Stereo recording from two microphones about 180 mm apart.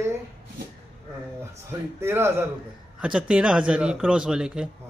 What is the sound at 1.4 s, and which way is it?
A man's voice, 15° right (ahead or behind).